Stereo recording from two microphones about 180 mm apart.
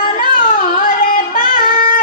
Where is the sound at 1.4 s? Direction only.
45° left (ahead or behind).